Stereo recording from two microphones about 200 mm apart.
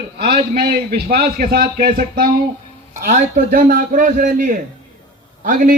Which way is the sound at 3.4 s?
45° right (ahead or behind).